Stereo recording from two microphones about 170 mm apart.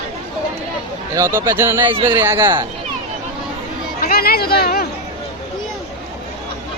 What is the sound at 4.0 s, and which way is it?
Speech, 65° left (ahead or behind).